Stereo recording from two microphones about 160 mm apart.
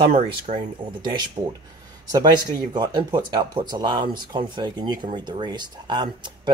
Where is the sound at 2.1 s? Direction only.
25° right (ahead or behind).